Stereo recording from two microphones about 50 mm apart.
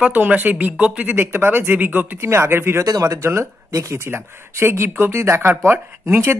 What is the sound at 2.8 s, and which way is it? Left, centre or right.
Speech, right.